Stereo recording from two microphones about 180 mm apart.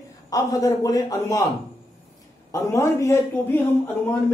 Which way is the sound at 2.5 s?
15° left (ahead or behind).